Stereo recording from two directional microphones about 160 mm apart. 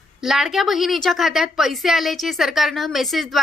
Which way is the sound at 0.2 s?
Centre (ahead or behind).